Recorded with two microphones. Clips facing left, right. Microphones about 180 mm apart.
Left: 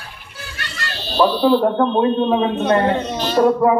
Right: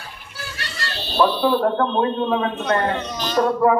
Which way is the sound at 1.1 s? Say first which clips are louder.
Left 3 dB; 20° left (ahead or behind).